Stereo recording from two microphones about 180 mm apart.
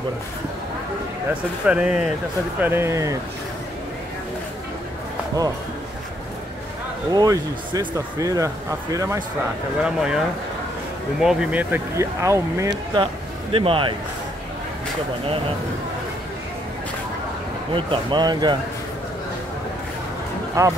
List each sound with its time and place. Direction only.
1.7 s speech: 5° right (ahead or behind)
7.1 s speech: 20° right (ahead or behind)
9.8 s speech: 5° right (ahead or behind); by 13.9 s 30° right (ahead or behind)
17.7 s speech: 25° right (ahead or behind)
20.6 s speech: 15° right (ahead or behind)